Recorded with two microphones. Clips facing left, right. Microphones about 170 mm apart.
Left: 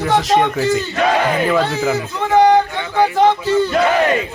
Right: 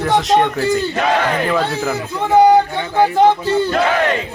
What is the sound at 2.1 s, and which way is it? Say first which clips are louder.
Speech: right 2 dB; 10° right (ahead or behind).